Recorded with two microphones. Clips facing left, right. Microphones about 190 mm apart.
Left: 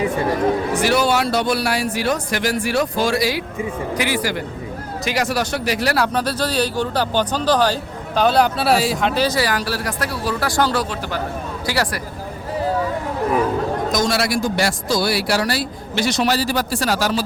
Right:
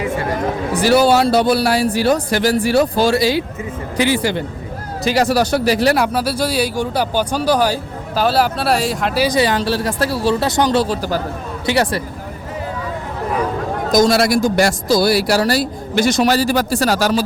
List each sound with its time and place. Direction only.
0.8 s speech: 35° right (ahead or behind)
6.1 s speech: 10° right (ahead or behind)
9.2 s speech: 20° right (ahead or behind)
10.8 s speech: 40° right (ahead or behind)
11.6 s speech: 20° right (ahead or behind)
13.9 s speech: 40° right (ahead or behind)